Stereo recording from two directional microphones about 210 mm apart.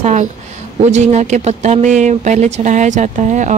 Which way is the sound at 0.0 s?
35° right (ahead or behind).